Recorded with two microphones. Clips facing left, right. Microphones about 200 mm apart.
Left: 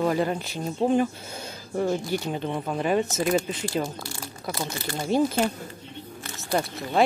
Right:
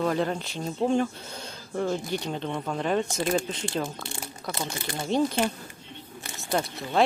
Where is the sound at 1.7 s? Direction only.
10° left (ahead or behind).